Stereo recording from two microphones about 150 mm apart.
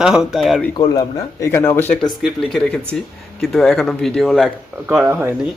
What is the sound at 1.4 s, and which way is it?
Speech, 15° left (ahead or behind).